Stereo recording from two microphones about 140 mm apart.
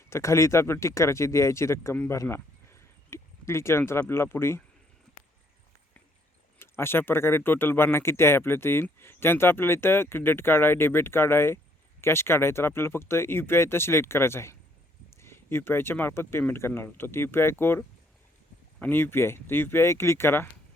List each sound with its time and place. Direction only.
0.1 s speech: 20° left (ahead or behind)
6.6 s speech: 15° left (ahead or behind)